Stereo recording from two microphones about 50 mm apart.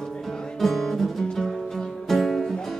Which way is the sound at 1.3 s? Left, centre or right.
Centre.